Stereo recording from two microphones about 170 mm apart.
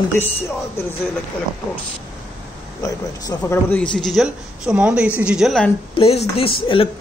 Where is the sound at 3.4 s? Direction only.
10° left (ahead or behind).